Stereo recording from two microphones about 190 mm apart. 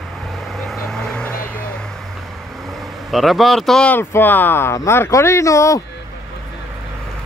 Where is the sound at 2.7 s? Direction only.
Centre (ahead or behind); by 5.8 s 15° left (ahead or behind).